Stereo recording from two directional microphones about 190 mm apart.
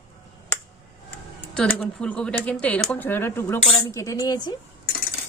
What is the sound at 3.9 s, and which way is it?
Speech, 15° left (ahead or behind).